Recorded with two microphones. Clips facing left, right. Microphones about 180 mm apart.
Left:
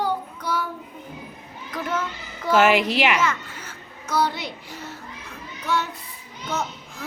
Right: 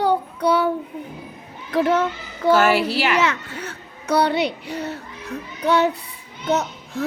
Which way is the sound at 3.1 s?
70° right (ahead or behind).